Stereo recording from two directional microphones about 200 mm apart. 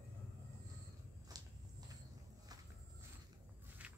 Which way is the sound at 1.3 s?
20° right (ahead or behind).